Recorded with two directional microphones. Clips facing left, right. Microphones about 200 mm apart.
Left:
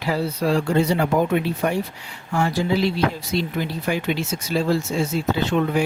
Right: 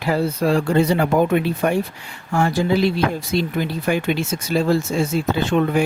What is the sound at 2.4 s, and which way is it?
Speech, 50° right (ahead or behind).